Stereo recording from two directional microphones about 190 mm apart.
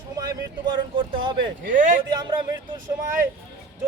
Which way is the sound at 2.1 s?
25° right (ahead or behind).